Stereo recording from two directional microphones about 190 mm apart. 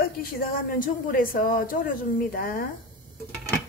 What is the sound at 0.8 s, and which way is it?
A woman's voice, 45° left (ahead or behind).